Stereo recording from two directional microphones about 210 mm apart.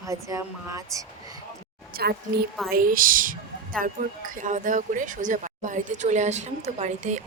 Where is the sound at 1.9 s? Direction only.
45° right (ahead or behind).